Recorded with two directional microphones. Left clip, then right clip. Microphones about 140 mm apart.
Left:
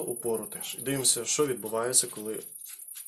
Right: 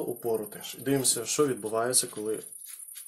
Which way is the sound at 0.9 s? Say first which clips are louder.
Right 1 dB; 45° right (ahead or behind).